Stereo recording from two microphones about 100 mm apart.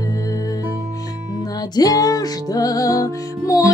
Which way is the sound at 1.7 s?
40° left (ahead or behind).